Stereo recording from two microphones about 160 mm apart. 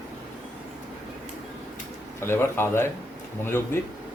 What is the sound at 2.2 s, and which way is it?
Speech, 15° left (ahead or behind).